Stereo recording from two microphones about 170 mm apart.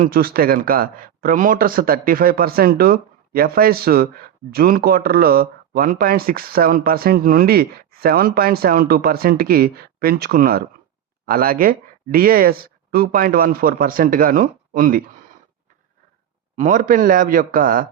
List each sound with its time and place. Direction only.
0.0 s speech: 60° right (ahead or behind)
16.6 s a man's voice: 50° right (ahead or behind)